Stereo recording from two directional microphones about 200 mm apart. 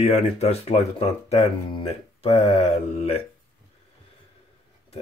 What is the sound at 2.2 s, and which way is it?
Speech, 30° left (ahead or behind).